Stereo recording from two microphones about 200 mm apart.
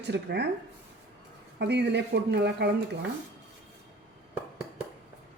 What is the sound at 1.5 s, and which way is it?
Speech, 60° right (ahead or behind).